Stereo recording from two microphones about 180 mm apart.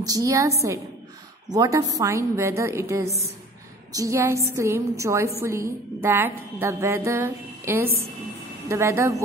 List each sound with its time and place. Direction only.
0.0 s music: 20° right (ahead or behind)
1.5 s music: 20° right (ahead or behind)